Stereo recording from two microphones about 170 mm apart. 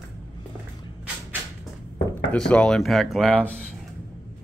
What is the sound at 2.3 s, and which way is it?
Speech, 5° left (ahead or behind).